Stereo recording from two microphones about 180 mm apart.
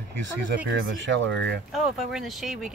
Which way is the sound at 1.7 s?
Centre (ahead or behind).